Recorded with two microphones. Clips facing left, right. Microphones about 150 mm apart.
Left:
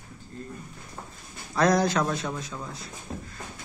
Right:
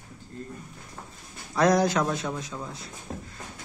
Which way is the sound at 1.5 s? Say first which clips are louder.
Right 1 dB; 15° right (ahead or behind).